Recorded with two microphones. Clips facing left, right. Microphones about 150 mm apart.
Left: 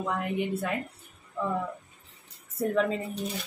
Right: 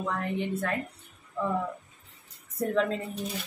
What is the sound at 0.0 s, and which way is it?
Speech, 10° left (ahead or behind).